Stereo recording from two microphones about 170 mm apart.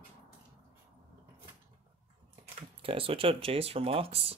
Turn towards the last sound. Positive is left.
turn(degrees=-35)  # may be behind; listen again after turning